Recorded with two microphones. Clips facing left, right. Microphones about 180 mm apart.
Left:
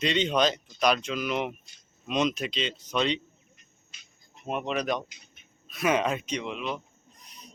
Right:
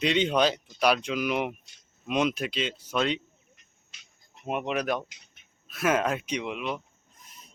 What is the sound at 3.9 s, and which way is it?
Insect, 85° right.